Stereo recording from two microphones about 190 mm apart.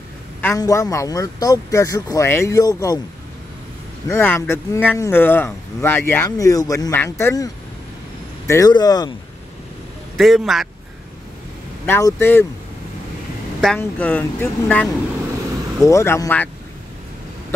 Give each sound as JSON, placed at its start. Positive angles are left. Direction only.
{"t": 0.4, "sound": "speech", "side_deg": 15}
{"t": 4.1, "sound": "speech", "side_deg": 15}
{"t": 10.1, "sound": "speech", "side_deg": 0}
{"t": 11.8, "sound": "speech", "side_deg": 10}
{"t": 13.7, "sound": "speech", "side_deg": 10}